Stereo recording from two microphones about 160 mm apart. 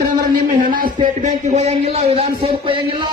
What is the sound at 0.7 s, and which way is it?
Speech, 55° right (ahead or behind).